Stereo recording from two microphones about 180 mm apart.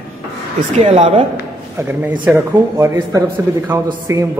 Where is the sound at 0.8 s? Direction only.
30° right (ahead or behind).